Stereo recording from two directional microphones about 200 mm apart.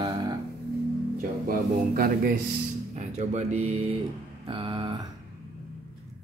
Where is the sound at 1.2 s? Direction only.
45° right (ahead or behind).